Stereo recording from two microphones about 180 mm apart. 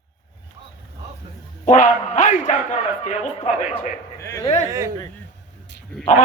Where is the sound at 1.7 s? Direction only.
45° left (ahead or behind).